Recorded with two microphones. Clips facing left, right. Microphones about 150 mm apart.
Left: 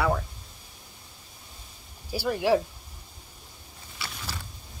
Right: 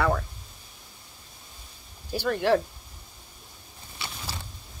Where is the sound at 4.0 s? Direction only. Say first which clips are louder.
Even; 20° right (ahead or behind).